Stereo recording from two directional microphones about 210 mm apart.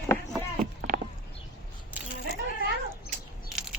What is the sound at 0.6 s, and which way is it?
Clip-clop, 45° right (ahead or behind).